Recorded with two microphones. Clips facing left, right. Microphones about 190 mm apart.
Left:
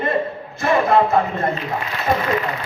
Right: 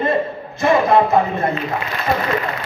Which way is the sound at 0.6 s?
15° right (ahead or behind).